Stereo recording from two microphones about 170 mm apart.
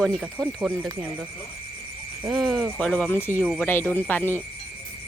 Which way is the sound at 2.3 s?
Centre (ahead or behind).